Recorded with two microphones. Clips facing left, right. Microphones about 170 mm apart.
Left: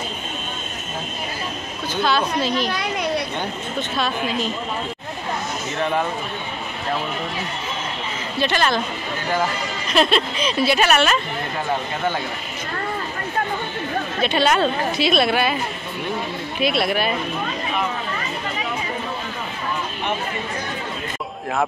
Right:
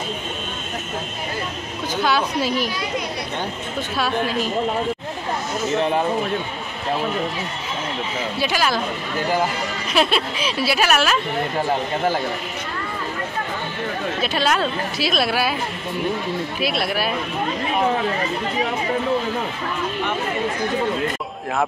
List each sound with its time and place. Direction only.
2.0 s a woman's voice: 10° right (ahead or behind)
3.9 s a woman's voice: 10° right (ahead or behind)
5.8 s speech: 30° right (ahead or behind)
8.4 s speech: 5° right (ahead or behind)
9.8 s speech: 5° right (ahead or behind)
14.2 s speech: centre (ahead or behind)
16.5 s speech: centre (ahead or behind)